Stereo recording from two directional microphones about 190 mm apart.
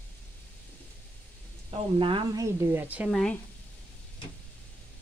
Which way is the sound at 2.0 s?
25° right (ahead or behind).